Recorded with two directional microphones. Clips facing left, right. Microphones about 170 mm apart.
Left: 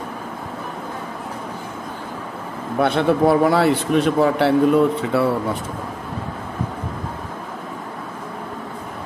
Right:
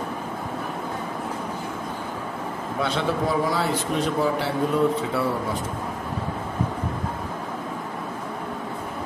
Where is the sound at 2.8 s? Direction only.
60° left (ahead or behind).